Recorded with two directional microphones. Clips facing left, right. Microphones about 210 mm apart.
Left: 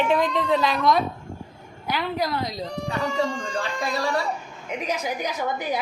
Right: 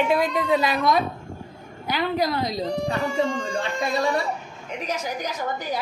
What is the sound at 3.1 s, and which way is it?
Speech, 20° right (ahead or behind).